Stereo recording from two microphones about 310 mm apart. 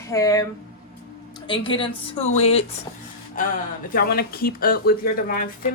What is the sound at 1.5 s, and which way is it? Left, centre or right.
Speech, centre.